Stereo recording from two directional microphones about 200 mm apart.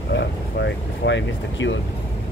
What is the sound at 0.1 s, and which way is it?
Speech, 60° left (ahead or behind).